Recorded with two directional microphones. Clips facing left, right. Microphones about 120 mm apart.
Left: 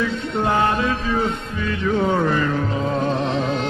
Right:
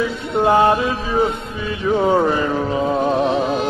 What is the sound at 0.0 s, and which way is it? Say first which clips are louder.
Music: right 4 dB; 15° right (ahead or behind).